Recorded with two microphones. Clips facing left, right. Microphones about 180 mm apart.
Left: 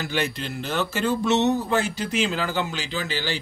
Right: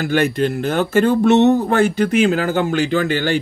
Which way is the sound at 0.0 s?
50° right (ahead or behind).